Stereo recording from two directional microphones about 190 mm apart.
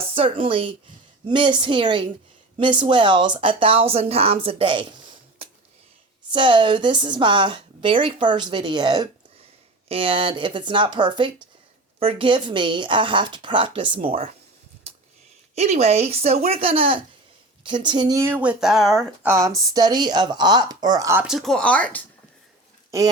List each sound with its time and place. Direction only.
0.0 s a woman's voice: 30° right (ahead or behind)
6.3 s a woman's voice: 25° right (ahead or behind)
15.5 s speech: 35° right (ahead or behind); by 19.3 s centre (ahead or behind)
19.3 s a woman's voice: 15° right (ahead or behind)
21.2 s speech: centre (ahead or behind)